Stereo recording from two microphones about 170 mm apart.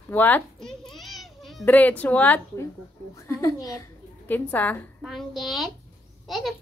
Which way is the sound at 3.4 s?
20° left (ahead or behind).